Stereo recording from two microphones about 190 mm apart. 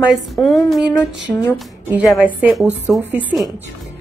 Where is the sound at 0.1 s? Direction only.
Centre (ahead or behind).